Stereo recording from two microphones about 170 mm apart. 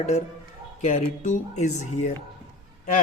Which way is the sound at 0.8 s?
45° left (ahead or behind).